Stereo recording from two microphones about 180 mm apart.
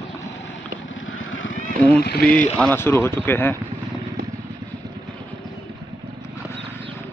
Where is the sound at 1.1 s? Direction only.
90° left.